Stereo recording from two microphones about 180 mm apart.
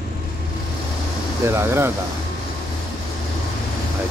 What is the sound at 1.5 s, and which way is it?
Speech, 15° right (ahead or behind).